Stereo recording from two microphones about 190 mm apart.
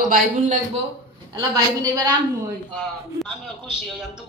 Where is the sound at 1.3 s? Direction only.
20° right (ahead or behind).